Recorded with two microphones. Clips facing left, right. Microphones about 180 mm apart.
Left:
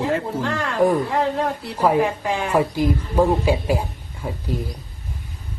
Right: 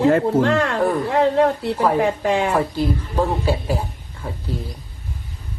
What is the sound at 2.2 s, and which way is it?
Speech, 70° right (ahead or behind).